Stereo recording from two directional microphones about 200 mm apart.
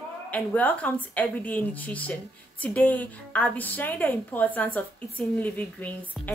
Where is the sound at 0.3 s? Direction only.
10° left (ahead or behind).